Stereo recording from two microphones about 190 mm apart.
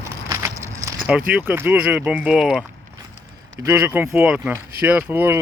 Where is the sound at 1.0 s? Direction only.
5° right (ahead or behind).